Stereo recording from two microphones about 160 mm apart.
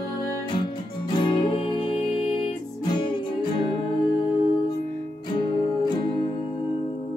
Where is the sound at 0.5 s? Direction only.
30° left (ahead or behind).